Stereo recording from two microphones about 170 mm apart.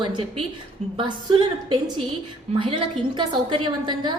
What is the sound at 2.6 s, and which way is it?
A woman's voice, 30° right (ahead or behind).